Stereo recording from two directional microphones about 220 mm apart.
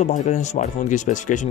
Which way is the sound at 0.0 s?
35° left (ahead or behind).